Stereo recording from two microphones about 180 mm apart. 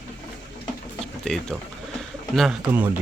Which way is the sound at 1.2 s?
5° left (ahead or behind).